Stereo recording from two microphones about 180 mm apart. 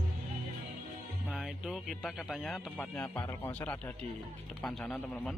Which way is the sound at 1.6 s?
Centre (ahead or behind).